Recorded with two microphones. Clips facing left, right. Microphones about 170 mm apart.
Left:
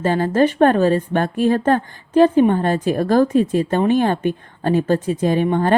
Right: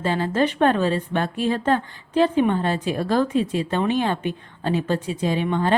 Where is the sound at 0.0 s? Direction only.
45° left (ahead or behind).